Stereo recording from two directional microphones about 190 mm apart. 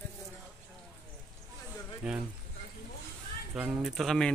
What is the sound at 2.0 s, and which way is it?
Speech, 5° right (ahead or behind).